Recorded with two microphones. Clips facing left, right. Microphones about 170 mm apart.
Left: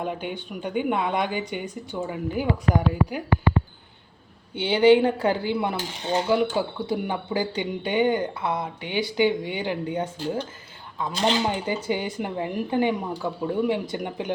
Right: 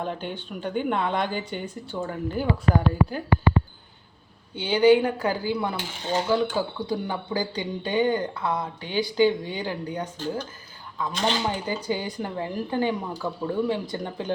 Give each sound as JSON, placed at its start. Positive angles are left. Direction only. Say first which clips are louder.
{"t": 0.0, "sound": "speech", "louder": "left 1 dB", "side_deg": 10}
{"t": 4.5, "sound": "speech", "louder": "left 1 dB", "side_deg": 25}